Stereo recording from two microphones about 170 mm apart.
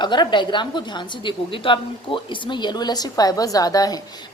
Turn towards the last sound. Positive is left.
turn(degrees=20)  # may be behind; listen again after turning